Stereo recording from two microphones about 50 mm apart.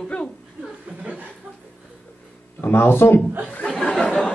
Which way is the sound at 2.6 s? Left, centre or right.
Left.